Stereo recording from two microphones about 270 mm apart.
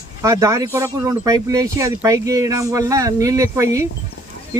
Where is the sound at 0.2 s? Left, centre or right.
Centre.